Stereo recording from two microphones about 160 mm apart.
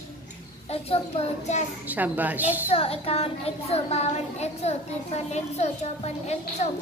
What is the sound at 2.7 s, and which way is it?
A child's voice, 40° left (ahead or behind).